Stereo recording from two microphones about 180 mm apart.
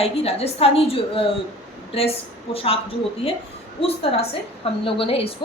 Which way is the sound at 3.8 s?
30° left (ahead or behind).